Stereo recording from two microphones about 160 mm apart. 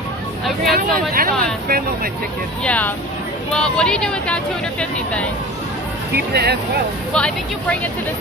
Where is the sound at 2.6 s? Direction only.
10° left (ahead or behind).